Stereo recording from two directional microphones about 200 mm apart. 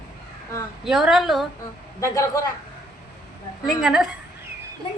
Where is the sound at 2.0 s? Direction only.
15° left (ahead or behind).